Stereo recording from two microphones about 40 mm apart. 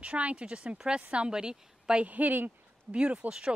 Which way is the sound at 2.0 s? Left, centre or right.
Right.